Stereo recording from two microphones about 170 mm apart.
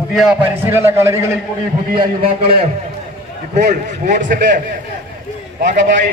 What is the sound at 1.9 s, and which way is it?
Speech, 30° right (ahead or behind).